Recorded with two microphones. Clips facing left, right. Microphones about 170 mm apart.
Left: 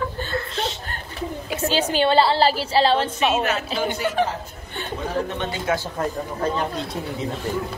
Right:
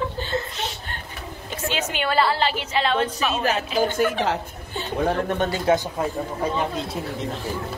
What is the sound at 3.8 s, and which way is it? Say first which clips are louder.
Speech: right 7 dB; 50° right (ahead or behind).